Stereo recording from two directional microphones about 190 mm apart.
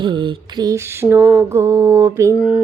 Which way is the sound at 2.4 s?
5° right (ahead or behind).